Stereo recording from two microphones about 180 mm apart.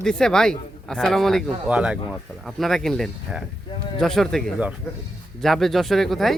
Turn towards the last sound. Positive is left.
turn(degrees=0)  # may be behind; listen again after turning